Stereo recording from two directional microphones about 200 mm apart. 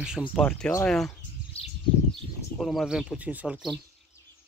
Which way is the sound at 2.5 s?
Centre (ahead or behind).